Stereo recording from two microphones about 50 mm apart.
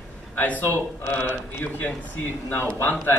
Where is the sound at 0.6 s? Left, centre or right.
Left.